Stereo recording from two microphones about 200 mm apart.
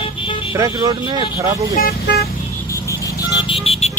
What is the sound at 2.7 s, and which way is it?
Vehicle, 15° left (ahead or behind).